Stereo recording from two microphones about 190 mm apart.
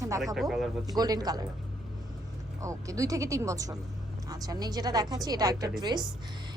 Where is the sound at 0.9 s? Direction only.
20° right (ahead or behind).